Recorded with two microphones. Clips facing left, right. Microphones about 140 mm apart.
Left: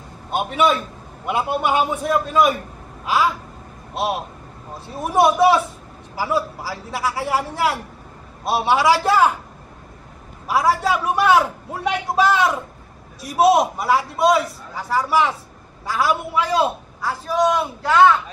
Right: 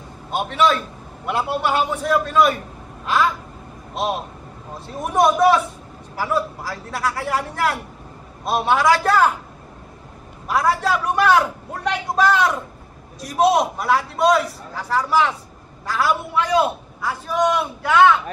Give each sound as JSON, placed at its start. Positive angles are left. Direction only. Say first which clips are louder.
{"t": 0.4, "sound": "a man's voice", "louder": "even", "side_deg": 5}
{"t": 10.5, "sound": "a man's voice", "louder": "left 1 dB", "side_deg": 5}